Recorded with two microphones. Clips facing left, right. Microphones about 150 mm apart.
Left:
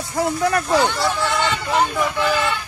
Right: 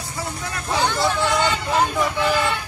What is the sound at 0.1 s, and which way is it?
Speech, 60° left (ahead or behind).